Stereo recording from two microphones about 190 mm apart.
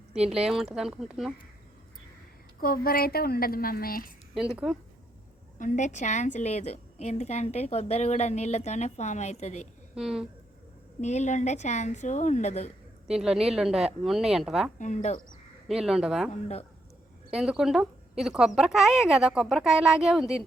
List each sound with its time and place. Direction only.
0.1 s speech: 5° right (ahead or behind)
2.6 s speech: 50° left (ahead or behind)
4.4 s speech: 5° right (ahead or behind)
5.5 s a woman's voice: 40° left (ahead or behind)
9.9 s speech: 5° right (ahead or behind)
11.0 s a woman's voice: 35° left (ahead or behind)
13.1 s speech: 5° right (ahead or behind)
14.8 s a woman's voice: 40° left (ahead or behind)
15.6 s speech: centre (ahead or behind)
16.3 s a woman's voice: 35° left (ahead or behind)
17.3 s speech: 5° right (ahead or behind)